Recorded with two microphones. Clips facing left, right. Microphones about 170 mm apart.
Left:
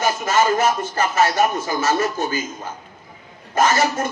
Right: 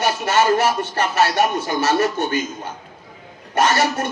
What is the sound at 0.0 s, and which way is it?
Speech, 70° right (ahead or behind).